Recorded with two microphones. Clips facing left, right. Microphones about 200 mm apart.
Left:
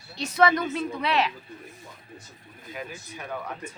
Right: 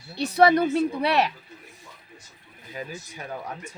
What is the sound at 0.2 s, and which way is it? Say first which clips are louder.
Speech: right 4 dB; 35° right (ahead or behind).